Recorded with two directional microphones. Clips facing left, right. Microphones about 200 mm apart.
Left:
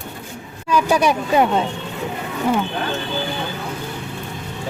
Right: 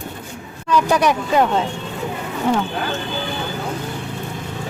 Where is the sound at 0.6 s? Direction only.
10° left (ahead or behind).